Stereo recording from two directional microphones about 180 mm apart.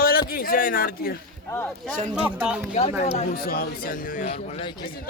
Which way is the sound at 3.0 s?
35° left (ahead or behind).